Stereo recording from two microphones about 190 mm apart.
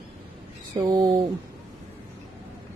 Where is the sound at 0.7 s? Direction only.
25° right (ahead or behind).